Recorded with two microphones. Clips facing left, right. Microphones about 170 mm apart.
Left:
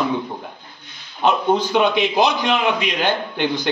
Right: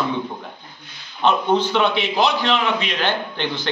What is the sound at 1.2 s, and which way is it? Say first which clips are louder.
A man's voice: even; 10° left (ahead or behind).